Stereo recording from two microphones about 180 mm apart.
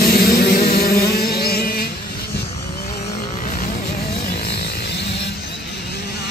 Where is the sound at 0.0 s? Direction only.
55° left (ahead or behind).